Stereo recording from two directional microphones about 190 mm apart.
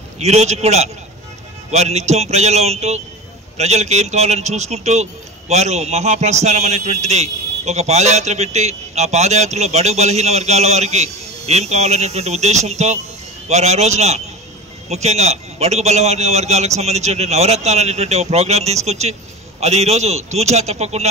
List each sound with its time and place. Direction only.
0.2 s a man's voice: 35° right (ahead or behind)